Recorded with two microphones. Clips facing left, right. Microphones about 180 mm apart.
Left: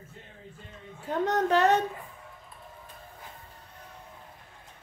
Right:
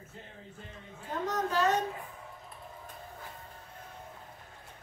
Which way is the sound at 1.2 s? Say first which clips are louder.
Left 6 dB; 65° left (ahead or behind).